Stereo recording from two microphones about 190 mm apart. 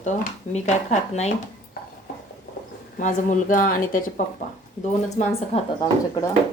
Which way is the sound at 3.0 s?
45° left (ahead or behind).